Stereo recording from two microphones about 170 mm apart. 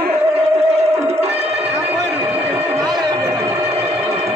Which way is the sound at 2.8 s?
25° right (ahead or behind).